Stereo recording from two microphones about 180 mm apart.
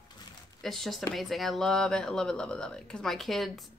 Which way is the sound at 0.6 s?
Centre (ahead or behind).